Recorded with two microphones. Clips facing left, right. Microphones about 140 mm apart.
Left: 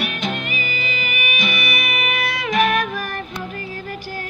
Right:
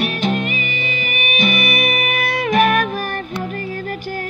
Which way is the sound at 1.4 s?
50° right (ahead or behind).